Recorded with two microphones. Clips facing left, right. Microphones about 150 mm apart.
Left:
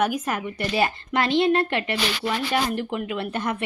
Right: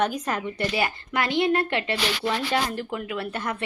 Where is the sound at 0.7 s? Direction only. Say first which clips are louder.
Left 3 dB; 25° left (ahead or behind).